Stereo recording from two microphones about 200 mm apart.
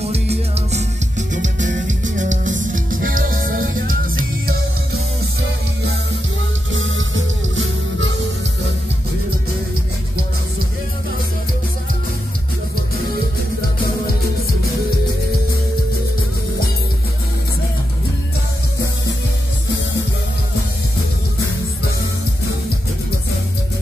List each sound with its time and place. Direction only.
0.0 s music: 30° right (ahead or behind)
6.7 s music: 75° right (ahead or behind)